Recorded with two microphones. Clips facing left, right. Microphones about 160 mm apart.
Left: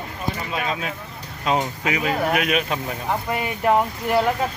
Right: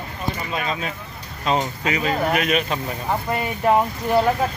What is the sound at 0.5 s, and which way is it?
Speech, 5° left (ahead or behind).